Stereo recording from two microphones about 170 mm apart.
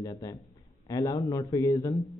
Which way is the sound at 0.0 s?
20° left (ahead or behind).